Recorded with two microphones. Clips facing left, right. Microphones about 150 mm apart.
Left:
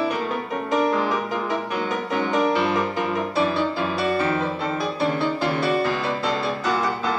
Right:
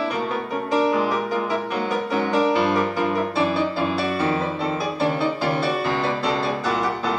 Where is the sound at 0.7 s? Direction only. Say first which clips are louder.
Right 1 dB; 5° right (ahead or behind).